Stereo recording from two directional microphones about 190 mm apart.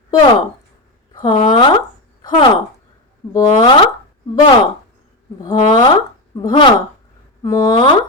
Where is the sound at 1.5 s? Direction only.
25° left (ahead or behind).